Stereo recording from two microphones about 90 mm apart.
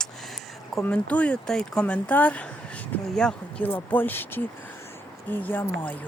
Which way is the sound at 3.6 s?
20° left (ahead or behind).